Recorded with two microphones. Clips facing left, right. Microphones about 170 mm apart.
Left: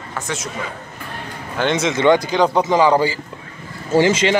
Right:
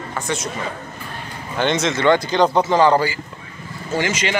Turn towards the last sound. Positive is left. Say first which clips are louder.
# left 6 dB
turn(degrees=30)  # may be behind; listen again after turning